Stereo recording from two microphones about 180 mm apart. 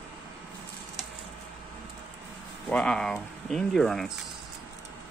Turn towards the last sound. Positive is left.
turn(degrees=0)  # may be behind; listen again after turning